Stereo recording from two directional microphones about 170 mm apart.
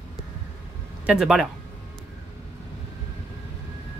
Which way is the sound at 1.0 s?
5° right (ahead or behind).